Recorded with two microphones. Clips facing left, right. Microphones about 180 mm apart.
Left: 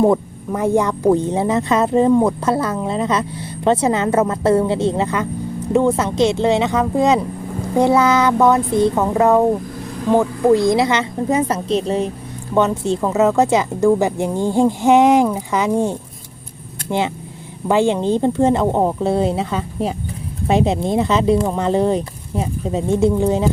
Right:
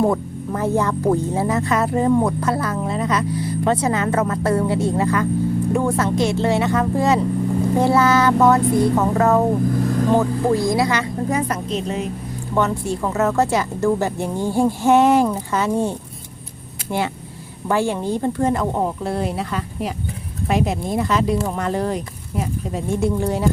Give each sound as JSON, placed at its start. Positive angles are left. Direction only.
{"t": 0.0, "sound": "speech", "side_deg": 15}
{"t": 12.5, "sound": "speech", "side_deg": 20}